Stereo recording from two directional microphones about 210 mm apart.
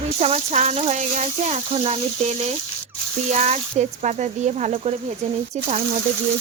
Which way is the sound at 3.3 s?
35° right (ahead or behind).